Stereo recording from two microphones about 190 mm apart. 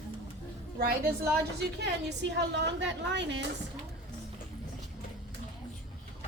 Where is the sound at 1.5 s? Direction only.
65° right (ahead or behind).